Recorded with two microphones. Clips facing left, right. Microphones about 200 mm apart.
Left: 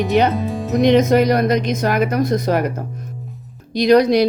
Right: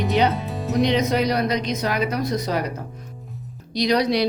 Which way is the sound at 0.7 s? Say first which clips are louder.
Left 7 dB; 50° left (ahead or behind).